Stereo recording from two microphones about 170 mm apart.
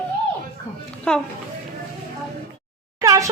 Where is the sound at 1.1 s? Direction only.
5° left (ahead or behind).